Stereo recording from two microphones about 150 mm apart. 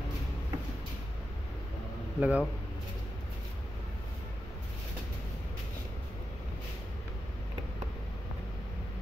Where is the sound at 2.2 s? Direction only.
10° right (ahead or behind).